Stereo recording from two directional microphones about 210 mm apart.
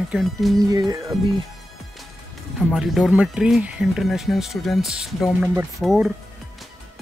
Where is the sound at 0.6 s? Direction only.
20° right (ahead or behind).